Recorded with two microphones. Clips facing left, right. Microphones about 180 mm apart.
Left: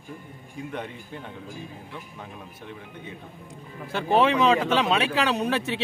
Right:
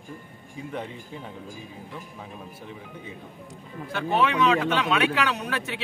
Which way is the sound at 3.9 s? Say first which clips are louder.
Left 3 dB; 30° left (ahead or behind).